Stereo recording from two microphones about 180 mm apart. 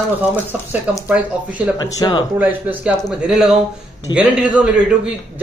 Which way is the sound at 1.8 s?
25° left (ahead or behind).